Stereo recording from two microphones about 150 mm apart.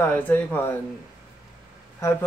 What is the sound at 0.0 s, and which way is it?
Speech, 15° left (ahead or behind).